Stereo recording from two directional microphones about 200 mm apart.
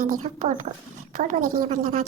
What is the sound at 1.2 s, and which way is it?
Speech, 40° right (ahead or behind).